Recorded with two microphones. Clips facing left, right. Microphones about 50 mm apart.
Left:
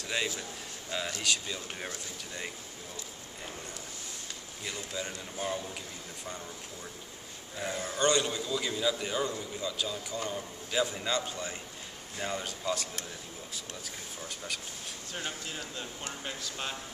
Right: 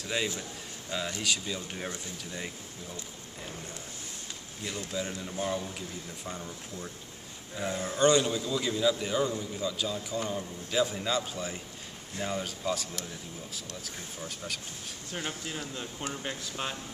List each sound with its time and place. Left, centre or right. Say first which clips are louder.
0.0 s a man's voice: right 1 dB; centre
4.6 s a man's voice: right 3 dB; centre
7.7 s speech: right 4 dB; right
8.1 s a man's voice: right 3 dB; centre
15.1 s speech: right 3 dB; centre